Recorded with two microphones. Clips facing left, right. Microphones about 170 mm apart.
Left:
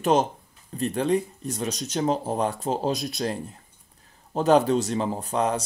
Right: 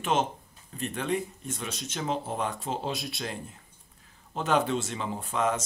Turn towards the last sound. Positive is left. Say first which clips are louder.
# left 3 dB
turn(degrees=35)  # may be behind; listen again after turning